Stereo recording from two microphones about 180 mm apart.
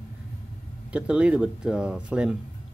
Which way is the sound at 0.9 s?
5° right (ahead or behind).